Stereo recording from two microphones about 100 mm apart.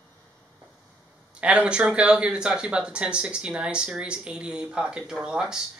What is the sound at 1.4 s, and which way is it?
Speech, 10° right (ahead or behind).